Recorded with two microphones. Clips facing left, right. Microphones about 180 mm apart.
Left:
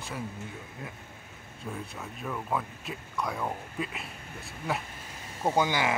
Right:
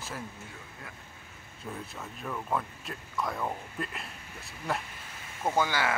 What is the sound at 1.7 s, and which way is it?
Speech, centre (ahead or behind).